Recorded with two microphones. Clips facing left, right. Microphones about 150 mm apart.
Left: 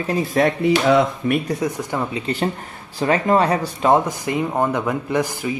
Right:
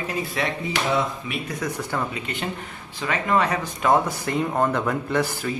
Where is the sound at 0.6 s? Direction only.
75° left (ahead or behind).